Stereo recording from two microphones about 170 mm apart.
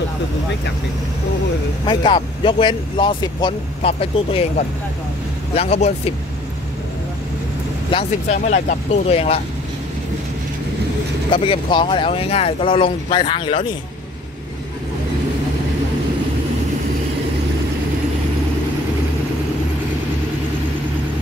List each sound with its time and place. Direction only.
1.9 s speech: 30° left (ahead or behind)
5.5 s speech: 35° left (ahead or behind)
7.9 s speech: 35° left (ahead or behind)
8.4 s speech: 45° left (ahead or behind)
11.3 s speech: 30° left (ahead or behind)